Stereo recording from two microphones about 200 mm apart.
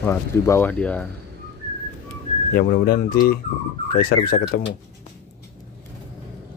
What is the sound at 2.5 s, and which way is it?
Speech, 50° left (ahead or behind).